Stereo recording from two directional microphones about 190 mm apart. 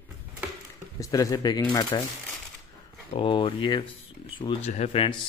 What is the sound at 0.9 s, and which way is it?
Speech, 15° left (ahead or behind).